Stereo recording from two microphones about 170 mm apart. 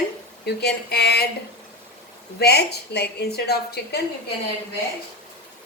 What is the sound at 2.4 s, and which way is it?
A woman's voice, 70° left (ahead or behind).